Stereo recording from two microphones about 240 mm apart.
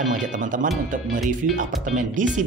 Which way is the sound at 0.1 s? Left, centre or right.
Right.